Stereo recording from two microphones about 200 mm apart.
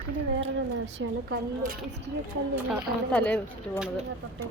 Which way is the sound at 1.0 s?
70° right (ahead or behind).